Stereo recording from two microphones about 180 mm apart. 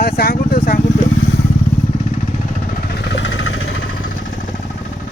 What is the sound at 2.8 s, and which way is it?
Vehicle, 65° left (ahead or behind).